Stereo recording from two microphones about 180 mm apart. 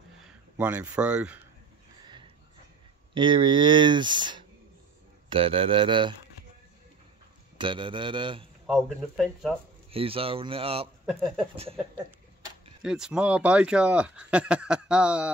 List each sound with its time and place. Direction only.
0.2 s speech: 10° right (ahead or behind)
2.0 s a sound: 25° right (ahead or behind)
3.2 s speech: 25° right (ahead or behind)
7.5 s speech: 25° right (ahead or behind)
8.6 s speech: centre (ahead or behind)
9.8 s speech: 30° right (ahead or behind)
11.1 s speech: centre (ahead or behind)
12.8 s speech: 5° right (ahead or behind)